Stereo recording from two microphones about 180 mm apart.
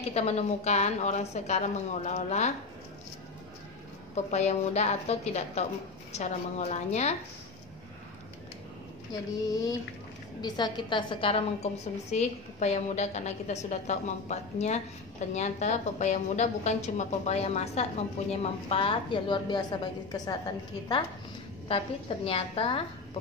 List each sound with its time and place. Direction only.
0.1 s a woman's voice: 35° left (ahead or behind)
4.1 s a woman's voice: 40° left (ahead or behind)
9.5 s a sound: 20° left (ahead or behind)
10.4 s a woman's voice: 25° left (ahead or behind)
21.6 s a woman's voice: 30° left (ahead or behind)